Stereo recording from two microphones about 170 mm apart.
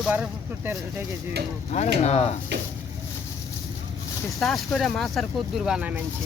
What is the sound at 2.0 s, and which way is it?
Speech, 40° left (ahead or behind).